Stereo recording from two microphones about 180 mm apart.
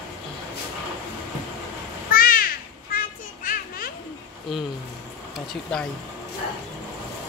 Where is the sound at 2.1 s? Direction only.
55° left (ahead or behind).